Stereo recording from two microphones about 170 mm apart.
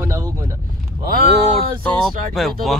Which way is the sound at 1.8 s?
Centre (ahead or behind).